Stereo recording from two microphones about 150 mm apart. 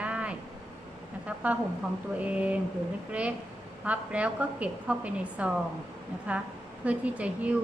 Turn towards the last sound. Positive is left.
turn(degrees=-10)  # may be behind; listen again after turning